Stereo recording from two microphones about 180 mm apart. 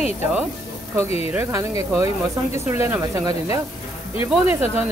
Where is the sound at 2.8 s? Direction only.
15° right (ahead or behind).